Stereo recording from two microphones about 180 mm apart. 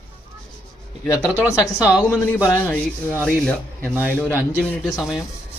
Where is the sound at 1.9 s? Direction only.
5° right (ahead or behind).